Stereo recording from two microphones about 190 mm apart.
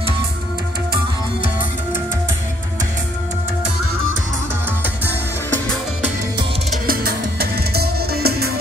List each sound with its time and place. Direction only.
6.9 s music: 50° right (ahead or behind)